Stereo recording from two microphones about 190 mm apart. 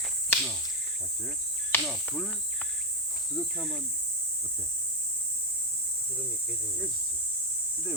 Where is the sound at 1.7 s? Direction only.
Centre (ahead or behind).